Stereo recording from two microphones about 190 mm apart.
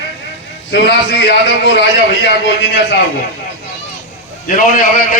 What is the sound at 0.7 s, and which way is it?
A man's voice, 60° left (ahead or behind).